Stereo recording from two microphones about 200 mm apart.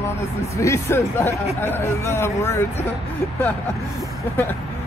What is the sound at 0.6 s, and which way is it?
Speech, 15° left (ahead or behind).